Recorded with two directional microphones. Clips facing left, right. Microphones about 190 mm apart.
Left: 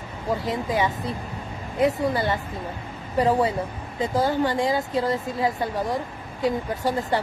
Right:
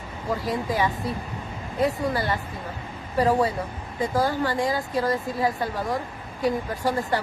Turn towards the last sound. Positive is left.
turn(degrees=25)  # may be behind; listen again after turning